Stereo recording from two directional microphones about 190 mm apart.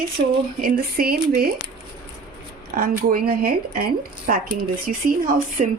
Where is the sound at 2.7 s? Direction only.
50° right (ahead or behind).